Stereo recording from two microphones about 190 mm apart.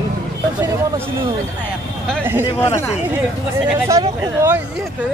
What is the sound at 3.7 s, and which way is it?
Speech, 15° right (ahead or behind).